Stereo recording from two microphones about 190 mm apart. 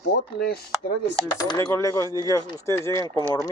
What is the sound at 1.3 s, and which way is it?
Speech, 20° left (ahead or behind).